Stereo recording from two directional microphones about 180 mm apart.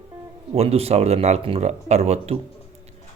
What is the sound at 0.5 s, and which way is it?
Speech, 35° right (ahead or behind).